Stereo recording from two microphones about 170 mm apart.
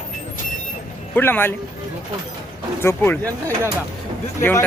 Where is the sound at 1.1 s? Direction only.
10° left (ahead or behind).